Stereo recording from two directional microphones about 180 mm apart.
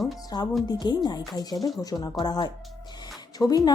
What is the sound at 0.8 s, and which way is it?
A woman's voice, 25° left (ahead or behind).